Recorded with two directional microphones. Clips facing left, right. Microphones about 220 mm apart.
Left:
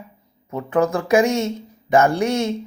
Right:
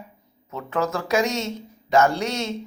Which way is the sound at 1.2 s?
55° left (ahead or behind).